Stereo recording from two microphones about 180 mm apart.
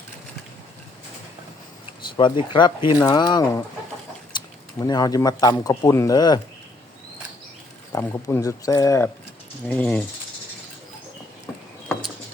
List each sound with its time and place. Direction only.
2.1 s speech: 25° left (ahead or behind)
7.9 s speech: 15° left (ahead or behind)